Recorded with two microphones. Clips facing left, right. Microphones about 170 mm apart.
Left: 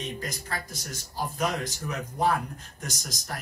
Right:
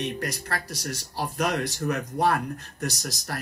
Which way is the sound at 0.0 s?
70° right (ahead or behind).